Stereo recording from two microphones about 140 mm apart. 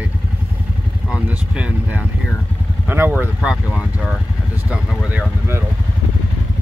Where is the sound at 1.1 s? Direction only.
5° right (ahead or behind).